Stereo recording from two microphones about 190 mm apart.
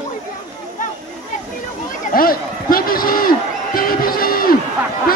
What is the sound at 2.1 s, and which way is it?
Run, 50° left (ahead or behind).